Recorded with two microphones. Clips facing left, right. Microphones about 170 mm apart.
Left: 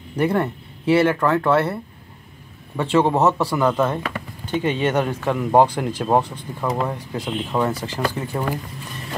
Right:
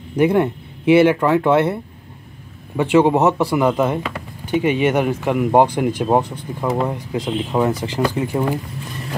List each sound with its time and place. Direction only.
0.2 s speech: 15° right (ahead or behind)